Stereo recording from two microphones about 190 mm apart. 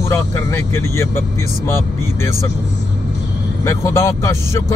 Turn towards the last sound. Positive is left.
turn(degrees=15)  # may be behind; listen again after turning